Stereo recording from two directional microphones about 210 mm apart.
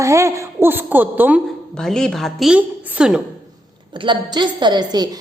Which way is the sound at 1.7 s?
5° left (ahead or behind).